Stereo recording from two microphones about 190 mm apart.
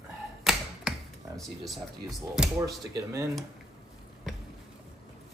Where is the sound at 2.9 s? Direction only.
15° right (ahead or behind).